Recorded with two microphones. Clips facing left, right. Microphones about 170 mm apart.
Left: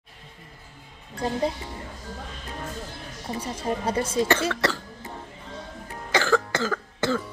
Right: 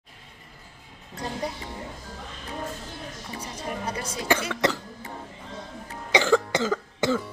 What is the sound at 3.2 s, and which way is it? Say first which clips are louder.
Speech: left 8 dB; 30° left (ahead or behind).